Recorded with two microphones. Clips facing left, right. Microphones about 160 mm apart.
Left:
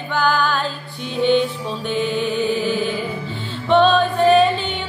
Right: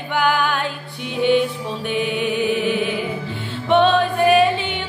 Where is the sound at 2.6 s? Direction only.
70° right (ahead or behind).